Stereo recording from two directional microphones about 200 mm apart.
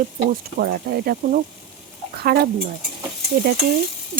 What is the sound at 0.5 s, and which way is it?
Speech, 50° right (ahead or behind).